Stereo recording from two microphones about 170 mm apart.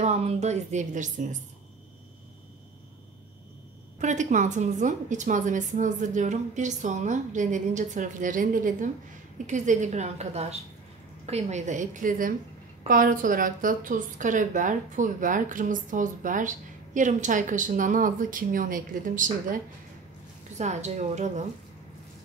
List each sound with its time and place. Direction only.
0.0 s a woman's voice: 40° right (ahead or behind)
4.0 s a woman's voice: 45° right (ahead or behind)
20.5 s a woman's voice: 45° right (ahead or behind)